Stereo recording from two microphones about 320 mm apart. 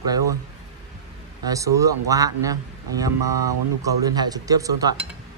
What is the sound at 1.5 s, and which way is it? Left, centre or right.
Speech, centre.